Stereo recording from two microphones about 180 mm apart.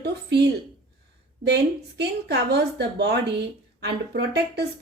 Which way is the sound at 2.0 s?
65° right (ahead or behind).